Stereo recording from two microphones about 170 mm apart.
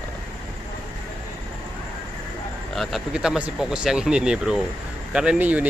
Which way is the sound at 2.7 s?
Centre (ahead or behind).